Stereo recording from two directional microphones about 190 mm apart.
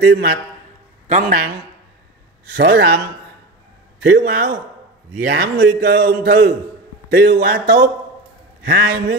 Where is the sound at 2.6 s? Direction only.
60° right (ahead or behind).